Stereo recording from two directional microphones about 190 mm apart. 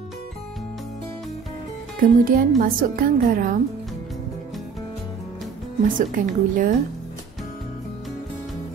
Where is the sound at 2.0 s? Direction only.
50° right (ahead or behind).